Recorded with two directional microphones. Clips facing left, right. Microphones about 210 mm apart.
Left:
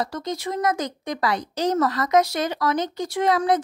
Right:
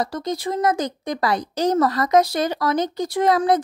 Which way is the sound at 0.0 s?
35° right (ahead or behind).